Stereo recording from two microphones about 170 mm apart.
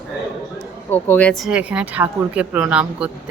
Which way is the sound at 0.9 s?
10° left (ahead or behind).